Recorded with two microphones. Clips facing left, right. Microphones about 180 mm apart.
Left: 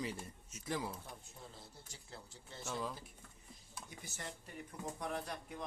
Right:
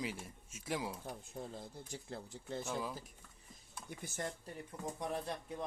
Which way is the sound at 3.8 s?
55° right (ahead or behind).